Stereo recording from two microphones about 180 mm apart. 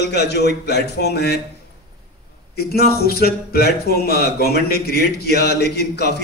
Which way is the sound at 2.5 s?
60° left (ahead or behind).